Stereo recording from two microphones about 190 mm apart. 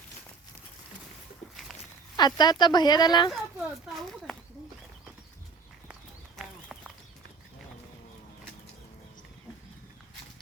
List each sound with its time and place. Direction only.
2.1 s speech: 20° left (ahead or behind)
3.6 s a sound: centre (ahead or behind)
5.9 s clip-clop: 5° right (ahead or behind)